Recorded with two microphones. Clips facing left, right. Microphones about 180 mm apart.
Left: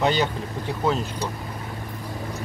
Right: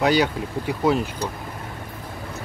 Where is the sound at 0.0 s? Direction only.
10° right (ahead or behind).